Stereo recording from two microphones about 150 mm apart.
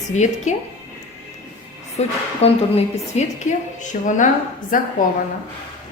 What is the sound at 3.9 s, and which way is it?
Speech, 55° left (ahead or behind).